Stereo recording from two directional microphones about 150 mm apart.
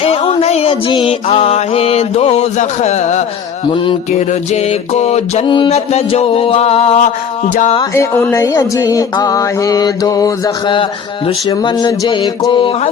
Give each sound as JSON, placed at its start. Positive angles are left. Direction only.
{"t": 0.0, "sound": "music", "side_deg": 40}
{"t": 4.3, "sound": "music", "side_deg": 45}
{"t": 7.9, "sound": "speech", "side_deg": 15}
{"t": 8.5, "sound": "mantra", "side_deg": 20}
{"t": 11.3, "sound": "a sound", "side_deg": 30}